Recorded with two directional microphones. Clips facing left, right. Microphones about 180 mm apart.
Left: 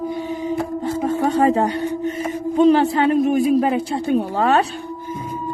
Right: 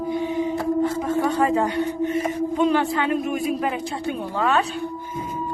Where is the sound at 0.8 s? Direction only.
35° left (ahead or behind).